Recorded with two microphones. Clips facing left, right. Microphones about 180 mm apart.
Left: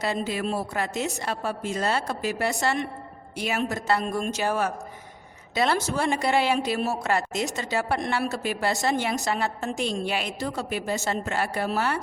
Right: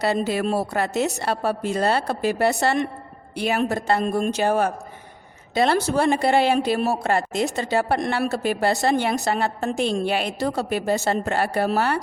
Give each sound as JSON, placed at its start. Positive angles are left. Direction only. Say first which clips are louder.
{"t": 0.0, "sound": "speech", "louder": "right 5 dB", "side_deg": -65}
{"t": 5.7, "sound": "speech", "louder": "right 5 dB", "side_deg": -60}